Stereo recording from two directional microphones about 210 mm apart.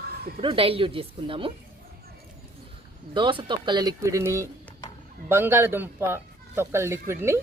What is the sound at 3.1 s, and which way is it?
Speech, 25° right (ahead or behind).